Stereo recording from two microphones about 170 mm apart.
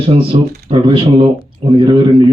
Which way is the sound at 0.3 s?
30° right (ahead or behind).